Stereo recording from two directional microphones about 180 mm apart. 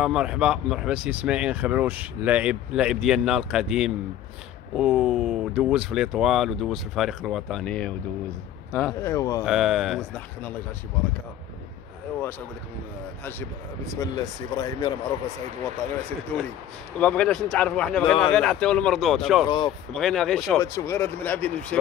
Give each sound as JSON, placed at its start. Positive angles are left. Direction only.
{"t": 0.0, "sound": "speech", "side_deg": -5}
{"t": 9.0, "sound": "speech", "side_deg": 15}
{"t": 9.4, "sound": "speech", "side_deg": 0}
{"t": 13.9, "sound": "speech", "side_deg": 25}
{"t": 17.0, "sound": "speech", "side_deg": 5}
{"t": 19.4, "sound": "speech", "side_deg": 25}
{"t": 19.9, "sound": "speech", "side_deg": 0}
{"t": 20.5, "sound": "speech", "side_deg": 15}